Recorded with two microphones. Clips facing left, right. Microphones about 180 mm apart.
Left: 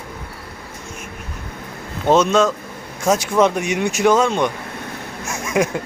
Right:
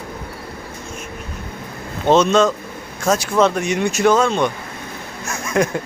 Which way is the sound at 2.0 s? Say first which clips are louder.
Right 1 dB; 10° left (ahead or behind).